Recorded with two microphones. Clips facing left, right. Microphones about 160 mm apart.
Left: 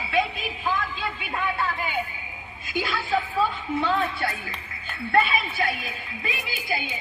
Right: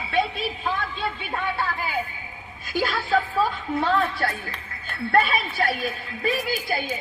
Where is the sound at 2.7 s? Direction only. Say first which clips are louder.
Right 3 dB; 40° right (ahead or behind).